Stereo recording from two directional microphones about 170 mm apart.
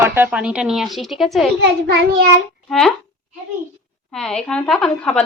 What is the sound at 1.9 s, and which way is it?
Child singing, 75° right (ahead or behind).